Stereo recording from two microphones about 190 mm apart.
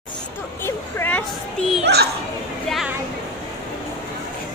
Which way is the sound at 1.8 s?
60° right (ahead or behind).